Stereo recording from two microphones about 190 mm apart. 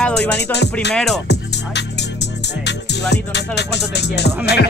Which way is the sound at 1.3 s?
65° left (ahead or behind).